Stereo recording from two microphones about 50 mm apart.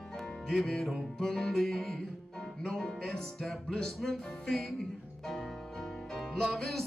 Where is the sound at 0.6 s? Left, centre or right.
Centre.